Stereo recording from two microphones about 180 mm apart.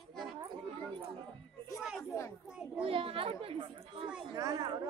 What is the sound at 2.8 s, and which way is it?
Speech, 30° right (ahead or behind).